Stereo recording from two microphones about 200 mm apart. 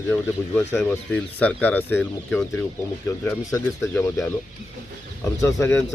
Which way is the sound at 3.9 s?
5° left (ahead or behind).